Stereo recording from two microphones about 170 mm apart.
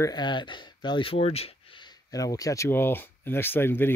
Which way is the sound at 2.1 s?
20° left (ahead or behind).